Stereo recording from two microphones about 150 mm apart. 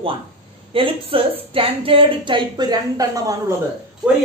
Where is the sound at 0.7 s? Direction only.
35° right (ahead or behind).